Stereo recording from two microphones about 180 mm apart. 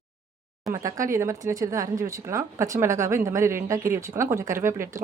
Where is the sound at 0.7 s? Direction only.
15° right (ahead or behind).